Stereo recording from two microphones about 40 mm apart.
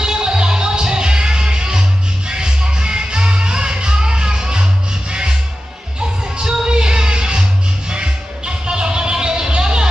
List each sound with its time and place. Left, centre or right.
0.0 s music: right
6.3 s music: right